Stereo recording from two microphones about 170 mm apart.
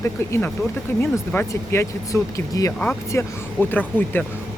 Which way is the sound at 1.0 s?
15° left (ahead or behind).